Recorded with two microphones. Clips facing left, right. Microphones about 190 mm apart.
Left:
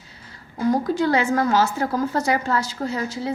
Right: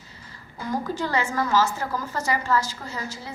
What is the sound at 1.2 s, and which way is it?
A woman's voice, 65° left (ahead or behind).